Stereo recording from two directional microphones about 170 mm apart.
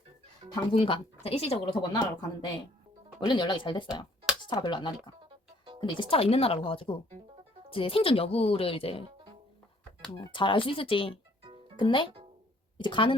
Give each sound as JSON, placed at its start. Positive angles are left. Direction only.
{"t": 0.7, "sound": "speech", "side_deg": 35}
{"t": 10.3, "sound": "speech", "side_deg": 30}